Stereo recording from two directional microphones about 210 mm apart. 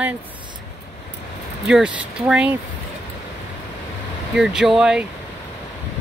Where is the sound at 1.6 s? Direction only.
5° right (ahead or behind).